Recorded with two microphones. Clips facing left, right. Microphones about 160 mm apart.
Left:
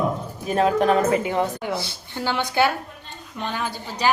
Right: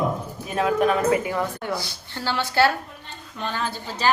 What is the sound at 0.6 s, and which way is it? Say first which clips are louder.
A woman's voice: left 2 dB; 30° left (ahead or behind).